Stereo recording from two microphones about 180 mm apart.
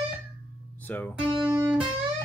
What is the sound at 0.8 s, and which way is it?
Speech, 10° left (ahead or behind).